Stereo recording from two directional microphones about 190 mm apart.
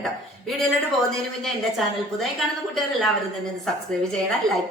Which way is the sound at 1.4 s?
Centre (ahead or behind).